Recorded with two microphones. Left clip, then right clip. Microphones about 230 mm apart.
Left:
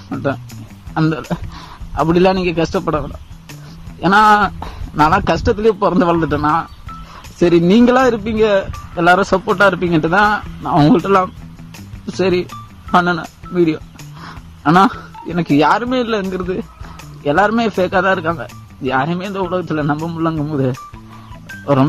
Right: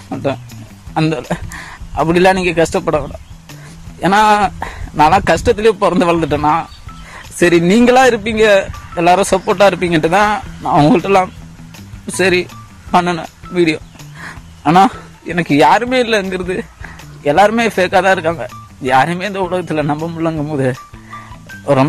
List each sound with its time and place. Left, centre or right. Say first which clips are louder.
0.1 s speech: right 2 dB; centre
7.6 s speech: right 4 dB; centre
14.6 s speech: right 2 dB; centre